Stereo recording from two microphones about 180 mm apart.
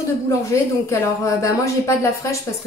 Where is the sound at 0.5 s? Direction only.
15° left (ahead or behind).